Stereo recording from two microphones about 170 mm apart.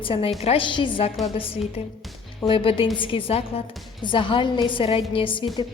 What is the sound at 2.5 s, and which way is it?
A woman's voice, 30° left (ahead or behind).